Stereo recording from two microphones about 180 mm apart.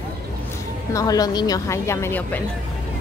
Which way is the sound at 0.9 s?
20° left (ahead or behind).